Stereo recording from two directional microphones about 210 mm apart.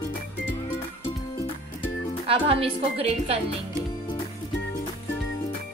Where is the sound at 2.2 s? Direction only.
25° right (ahead or behind).